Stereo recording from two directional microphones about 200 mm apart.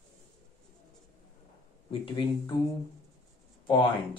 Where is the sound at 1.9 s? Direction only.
25° left (ahead or behind).